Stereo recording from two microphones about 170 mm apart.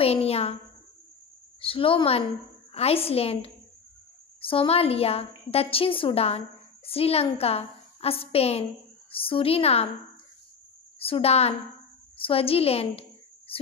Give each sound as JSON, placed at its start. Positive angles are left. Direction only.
{"t": 0.0, "sound": "a child's voice", "side_deg": 35}
{"t": 1.6, "sound": "a woman's voice", "side_deg": 30}
{"t": 11.0, "sound": "a woman's voice", "side_deg": 35}
{"t": 13.5, "sound": "a sound", "side_deg": 35}